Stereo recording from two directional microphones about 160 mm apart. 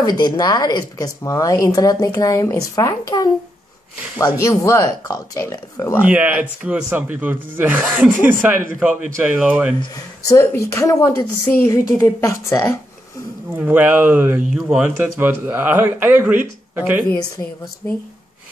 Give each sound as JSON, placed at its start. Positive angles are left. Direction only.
{"t": 0.0, "sound": "speech", "side_deg": 25}
{"t": 6.0, "sound": "speech", "side_deg": -10}
{"t": 9.8, "sound": "speech", "side_deg": 20}
{"t": 13.5, "sound": "speech", "side_deg": -10}
{"t": 17.4, "sound": "a woman's voice", "side_deg": 15}